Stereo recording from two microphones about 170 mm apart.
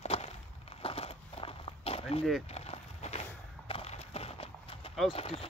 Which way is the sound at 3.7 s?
35° left (ahead or behind).